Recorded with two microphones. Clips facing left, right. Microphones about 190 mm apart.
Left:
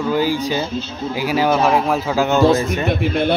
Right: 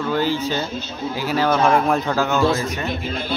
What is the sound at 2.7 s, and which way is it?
Speech, 65° left (ahead or behind).